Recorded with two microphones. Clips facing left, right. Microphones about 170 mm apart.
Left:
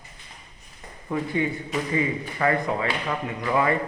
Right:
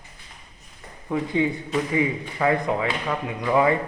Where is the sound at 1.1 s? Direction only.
15° right (ahead or behind).